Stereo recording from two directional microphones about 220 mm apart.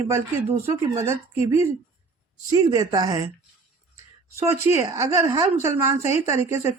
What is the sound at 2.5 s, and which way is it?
Speech, 15° right (ahead or behind).